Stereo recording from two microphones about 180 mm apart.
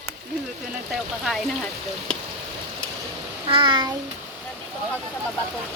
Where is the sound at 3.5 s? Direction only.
30° right (ahead or behind).